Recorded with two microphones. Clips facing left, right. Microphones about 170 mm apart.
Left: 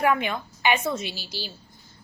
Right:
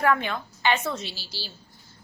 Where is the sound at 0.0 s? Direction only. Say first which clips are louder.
Left 1 dB; 15° left (ahead or behind).